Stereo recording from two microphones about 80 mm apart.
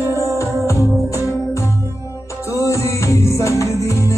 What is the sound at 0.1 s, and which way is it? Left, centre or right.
Music, left.